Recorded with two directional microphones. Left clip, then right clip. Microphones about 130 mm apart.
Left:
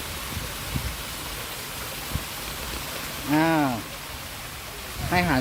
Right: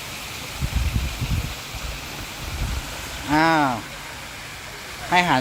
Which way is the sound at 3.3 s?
20° left (ahead or behind).